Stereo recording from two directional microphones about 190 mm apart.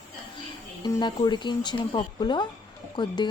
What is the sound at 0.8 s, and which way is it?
Speech, 20° left (ahead or behind).